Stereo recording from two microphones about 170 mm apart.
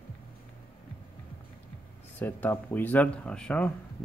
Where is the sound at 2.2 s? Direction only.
10° left (ahead or behind).